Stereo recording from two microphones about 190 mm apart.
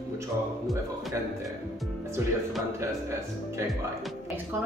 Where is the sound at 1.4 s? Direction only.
Centre (ahead or behind).